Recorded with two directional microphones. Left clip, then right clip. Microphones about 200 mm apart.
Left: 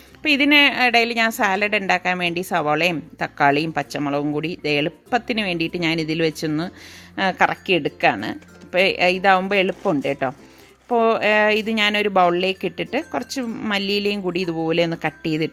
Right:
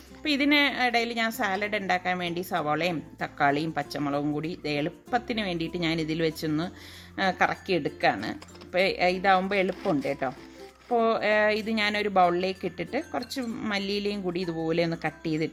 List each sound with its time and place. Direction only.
0.2 s a woman's voice: 35° left (ahead or behind)